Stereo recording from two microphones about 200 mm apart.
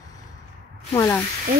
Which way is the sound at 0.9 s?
10° left (ahead or behind).